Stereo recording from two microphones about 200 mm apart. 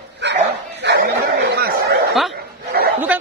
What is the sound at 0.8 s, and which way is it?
Snicker, 55° right (ahead or behind).